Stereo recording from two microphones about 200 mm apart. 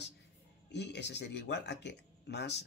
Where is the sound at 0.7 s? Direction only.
60° left (ahead or behind).